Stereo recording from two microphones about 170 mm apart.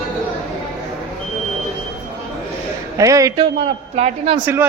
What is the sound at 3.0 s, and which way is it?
Speech, 20° right (ahead or behind).